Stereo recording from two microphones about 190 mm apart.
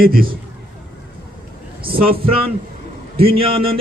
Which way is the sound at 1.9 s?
50° right (ahead or behind).